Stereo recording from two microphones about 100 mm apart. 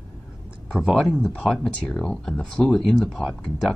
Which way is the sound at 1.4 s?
5° left (ahead or behind).